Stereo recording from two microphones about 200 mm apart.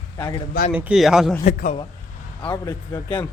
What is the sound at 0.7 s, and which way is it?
Speech, 5° right (ahead or behind).